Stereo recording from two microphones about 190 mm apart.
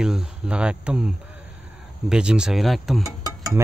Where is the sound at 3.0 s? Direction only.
20° right (ahead or behind).